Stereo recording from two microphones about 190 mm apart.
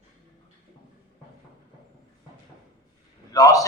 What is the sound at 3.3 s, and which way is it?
Speech, 20° left (ahead or behind).